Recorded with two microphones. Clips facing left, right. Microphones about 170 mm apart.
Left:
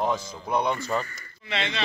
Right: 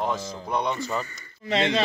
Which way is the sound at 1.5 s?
40° right (ahead or behind).